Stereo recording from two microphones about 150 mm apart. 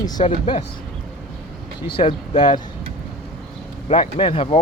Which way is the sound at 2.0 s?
40° left (ahead or behind).